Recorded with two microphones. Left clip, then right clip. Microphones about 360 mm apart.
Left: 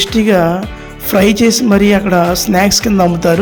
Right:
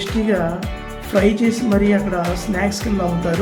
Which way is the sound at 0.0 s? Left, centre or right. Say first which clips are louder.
Left 9 dB; left.